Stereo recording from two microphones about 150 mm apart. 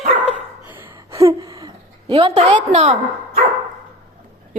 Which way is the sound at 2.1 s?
40° right (ahead or behind).